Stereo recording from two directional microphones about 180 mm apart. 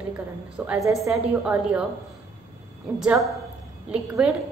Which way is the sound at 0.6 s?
15° right (ahead or behind).